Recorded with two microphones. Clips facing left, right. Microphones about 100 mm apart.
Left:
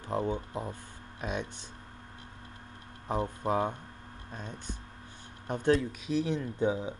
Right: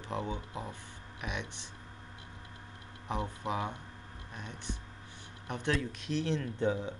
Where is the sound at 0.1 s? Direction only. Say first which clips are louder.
Left 5 dB; 35° left (ahead or behind).